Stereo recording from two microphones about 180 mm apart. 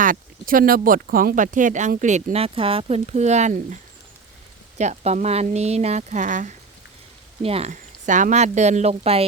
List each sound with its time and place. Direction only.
0.0 s speech: 50° right (ahead or behind)
4.8 s speech: 40° right (ahead or behind)